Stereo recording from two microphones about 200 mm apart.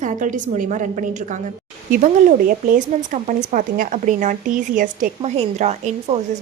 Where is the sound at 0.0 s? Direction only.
40° right (ahead or behind).